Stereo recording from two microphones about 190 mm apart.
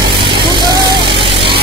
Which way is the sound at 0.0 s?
25° right (ahead or behind).